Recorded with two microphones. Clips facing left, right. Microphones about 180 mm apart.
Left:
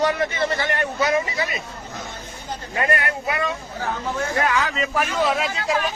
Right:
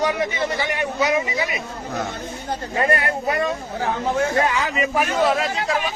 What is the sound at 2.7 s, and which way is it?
Speech, 35° right (ahead or behind).